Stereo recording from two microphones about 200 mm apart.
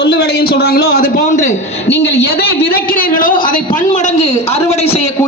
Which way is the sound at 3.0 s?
45° left (ahead or behind).